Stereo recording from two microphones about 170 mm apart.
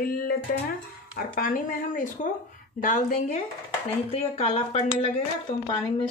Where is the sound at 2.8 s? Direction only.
45° left (ahead or behind).